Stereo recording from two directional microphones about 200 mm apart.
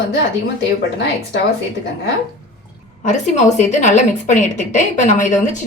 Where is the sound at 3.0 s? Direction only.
35° left (ahead or behind).